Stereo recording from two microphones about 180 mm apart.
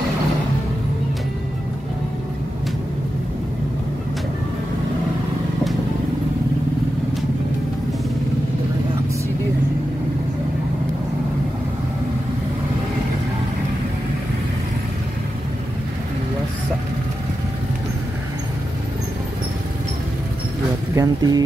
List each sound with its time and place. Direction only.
20.9 s speech: 20° right (ahead or behind)